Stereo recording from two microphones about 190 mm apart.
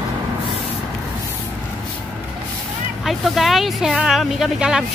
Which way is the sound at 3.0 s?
Centre (ahead or behind).